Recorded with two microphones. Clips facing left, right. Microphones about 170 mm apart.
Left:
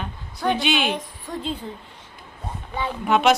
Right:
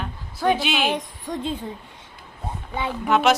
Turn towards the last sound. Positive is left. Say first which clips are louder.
# even
turn(degrees=0)  # may be behind; listen again after turning